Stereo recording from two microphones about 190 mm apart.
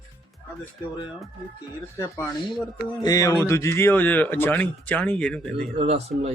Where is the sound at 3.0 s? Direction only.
20° left (ahead or behind).